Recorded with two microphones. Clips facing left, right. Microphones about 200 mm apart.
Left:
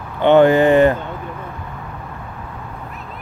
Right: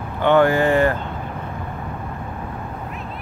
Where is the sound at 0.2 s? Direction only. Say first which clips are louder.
Left 5 dB; 20° left (ahead or behind).